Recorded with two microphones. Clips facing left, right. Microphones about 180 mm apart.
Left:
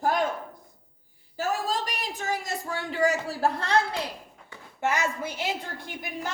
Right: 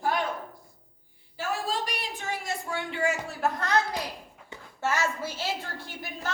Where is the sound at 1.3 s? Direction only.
40° left (ahead or behind).